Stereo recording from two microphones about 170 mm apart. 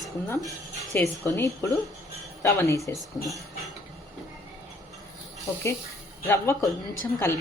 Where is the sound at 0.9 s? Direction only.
10° left (ahead or behind).